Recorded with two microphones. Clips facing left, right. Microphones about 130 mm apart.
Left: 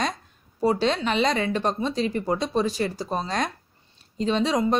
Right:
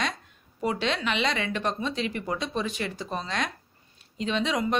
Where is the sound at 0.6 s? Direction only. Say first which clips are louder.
Left 6 dB; 35° left (ahead or behind).